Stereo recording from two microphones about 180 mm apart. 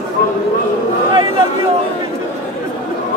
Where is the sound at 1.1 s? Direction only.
25° right (ahead or behind).